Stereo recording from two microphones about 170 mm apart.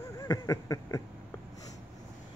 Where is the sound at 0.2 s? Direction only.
20° left (ahead or behind).